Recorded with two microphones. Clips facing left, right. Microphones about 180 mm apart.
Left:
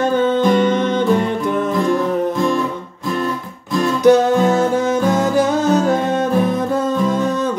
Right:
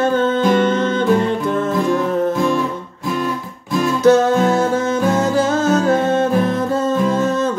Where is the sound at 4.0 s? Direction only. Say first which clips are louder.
Left 1 dB; 15° left (ahead or behind).